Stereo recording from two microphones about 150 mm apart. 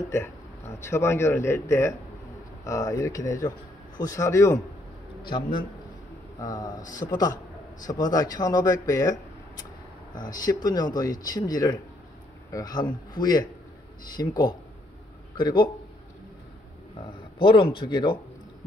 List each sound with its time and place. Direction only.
0.7 s a man's voice: 15° left (ahead or behind)
5.2 s a man's voice: 30° left (ahead or behind)
10.4 s a man's voice: 25° left (ahead or behind)
17.4 s a man's voice: 35° left (ahead or behind)